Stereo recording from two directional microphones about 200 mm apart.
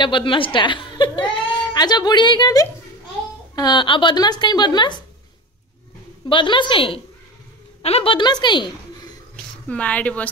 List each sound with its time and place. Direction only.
0.0 s a woman's voice: 25° left (ahead or behind)
6.2 s a woman's voice: 25° left (ahead or behind)
9.7 s speech: 5° left (ahead or behind)